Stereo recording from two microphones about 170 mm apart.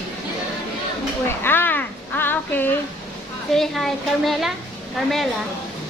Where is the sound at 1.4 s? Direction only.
10° left (ahead or behind).